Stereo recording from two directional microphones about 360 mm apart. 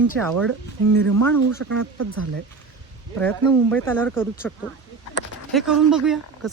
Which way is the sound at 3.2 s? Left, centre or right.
Centre.